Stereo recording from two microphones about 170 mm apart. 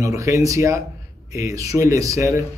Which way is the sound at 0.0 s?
20° right (ahead or behind).